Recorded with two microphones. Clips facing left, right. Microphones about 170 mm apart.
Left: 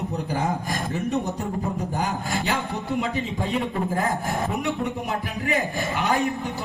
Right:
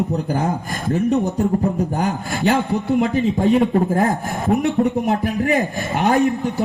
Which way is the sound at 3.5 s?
40° right (ahead or behind).